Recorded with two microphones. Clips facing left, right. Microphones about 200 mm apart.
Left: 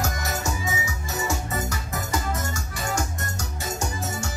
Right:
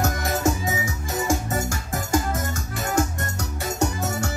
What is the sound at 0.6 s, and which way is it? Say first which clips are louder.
Music: right 3 dB; 50° right (ahead or behind).